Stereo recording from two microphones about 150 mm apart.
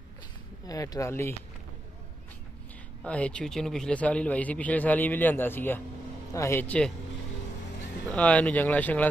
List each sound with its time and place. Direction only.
0.7 s speech: 25° left (ahead or behind)
3.0 s a man's voice: 5° left (ahead or behind)
8.1 s a man's voice: 10° left (ahead or behind)